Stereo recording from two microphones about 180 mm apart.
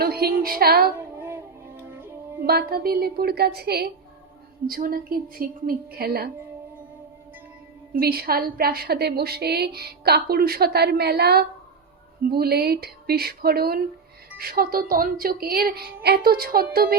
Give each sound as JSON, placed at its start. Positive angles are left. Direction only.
{"t": 0.0, "sound": "a sound", "side_deg": -60}
{"t": 0.9, "sound": "music", "side_deg": -15}
{"t": 2.5, "sound": "a woman's voice", "side_deg": -60}
{"t": 7.9, "sound": "a woman's voice", "side_deg": -55}